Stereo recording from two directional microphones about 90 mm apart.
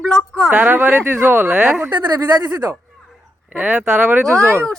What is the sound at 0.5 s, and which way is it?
Speech, 20° right (ahead or behind).